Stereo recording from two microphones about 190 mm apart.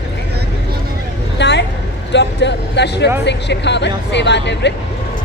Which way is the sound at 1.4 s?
65° left (ahead or behind).